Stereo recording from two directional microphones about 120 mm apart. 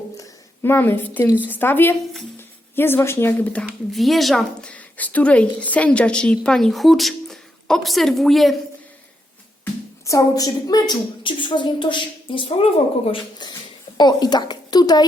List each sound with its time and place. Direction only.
0.2 s a woman's voice: 20° left (ahead or behind)
3.9 s a woman's voice: centre (ahead or behind)
4.7 s a woman's voice: 15° left (ahead or behind)
10.1 s a woman's voice: 30° left (ahead or behind); by 13.1 s 50° left (ahead or behind)
13.4 s a woman's voice: 40° left (ahead or behind)